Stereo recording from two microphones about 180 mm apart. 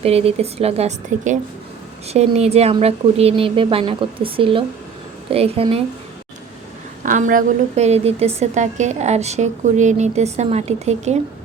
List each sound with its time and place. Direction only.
0.0 s a woman's voice: 35° right (ahead or behind)
7.0 s a woman's voice: 45° right (ahead or behind)